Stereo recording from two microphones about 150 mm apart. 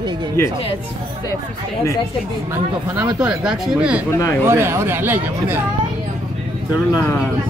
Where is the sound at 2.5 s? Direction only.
15° right (ahead or behind).